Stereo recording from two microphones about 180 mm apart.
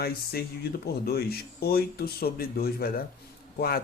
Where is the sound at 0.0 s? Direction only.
60° left (ahead or behind).